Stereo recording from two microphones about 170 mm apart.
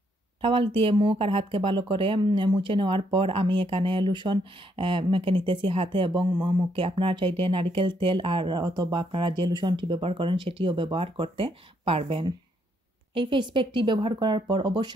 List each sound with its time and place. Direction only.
0.4 s speech: 30° right (ahead or behind)